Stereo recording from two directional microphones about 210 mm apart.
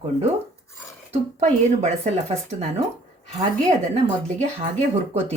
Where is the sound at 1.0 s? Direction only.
35° right (ahead or behind).